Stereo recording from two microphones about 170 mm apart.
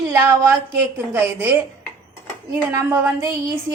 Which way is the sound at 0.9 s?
15° right (ahead or behind).